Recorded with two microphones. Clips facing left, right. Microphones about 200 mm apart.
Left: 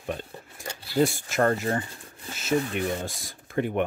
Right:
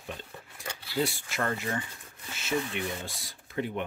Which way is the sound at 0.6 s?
40° left (ahead or behind).